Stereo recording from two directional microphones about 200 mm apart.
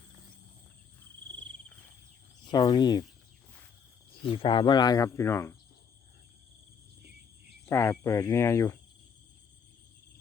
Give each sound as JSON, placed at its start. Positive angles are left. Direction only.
{"t": 2.4, "sound": "speech", "side_deg": 20}
{"t": 4.4, "sound": "speech", "side_deg": 25}
{"t": 7.6, "sound": "speech", "side_deg": 10}